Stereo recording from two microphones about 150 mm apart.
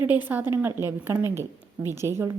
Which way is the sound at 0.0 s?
10° right (ahead or behind).